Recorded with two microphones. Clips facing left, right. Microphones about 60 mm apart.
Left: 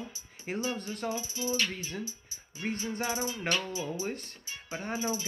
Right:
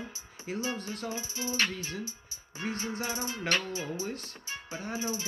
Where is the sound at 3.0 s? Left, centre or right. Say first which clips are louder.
Left 5 dB; left.